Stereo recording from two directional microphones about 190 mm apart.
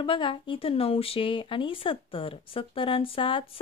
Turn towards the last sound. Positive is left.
turn(degrees=30)  # may be behind; listen again after turning